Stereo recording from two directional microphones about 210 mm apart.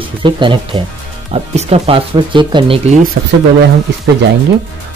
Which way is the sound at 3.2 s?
45° right (ahead or behind).